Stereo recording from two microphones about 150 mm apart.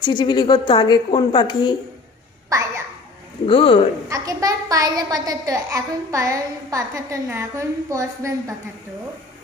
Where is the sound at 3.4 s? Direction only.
35° left (ahead or behind).